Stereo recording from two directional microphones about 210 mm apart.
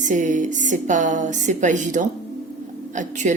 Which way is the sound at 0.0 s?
35° right (ahead or behind).